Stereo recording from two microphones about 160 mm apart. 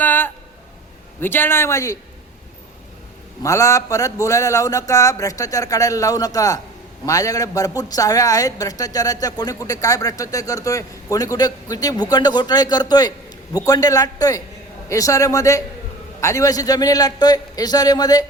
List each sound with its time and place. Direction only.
0.0 s a sound: 10° left (ahead or behind)
1.2 s a man's voice: 15° left (ahead or behind)
3.4 s a woman's voice: 20° left (ahead or behind)